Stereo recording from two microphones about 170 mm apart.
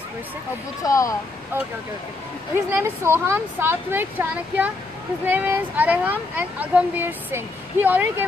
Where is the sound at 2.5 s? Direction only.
15° right (ahead or behind).